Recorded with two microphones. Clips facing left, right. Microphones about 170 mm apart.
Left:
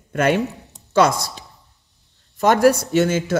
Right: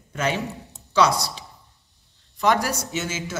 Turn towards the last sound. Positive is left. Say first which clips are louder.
# left 11 dB
turn(degrees=60)  # may be behind; listen again after turning